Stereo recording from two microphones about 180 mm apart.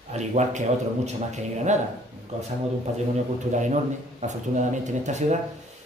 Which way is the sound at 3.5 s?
40° right (ahead or behind).